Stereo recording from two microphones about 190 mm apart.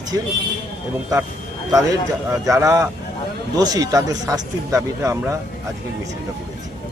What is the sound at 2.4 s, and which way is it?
Speech, 15° right (ahead or behind).